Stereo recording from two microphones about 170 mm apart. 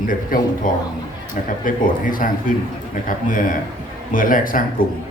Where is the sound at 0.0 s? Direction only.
55° left (ahead or behind).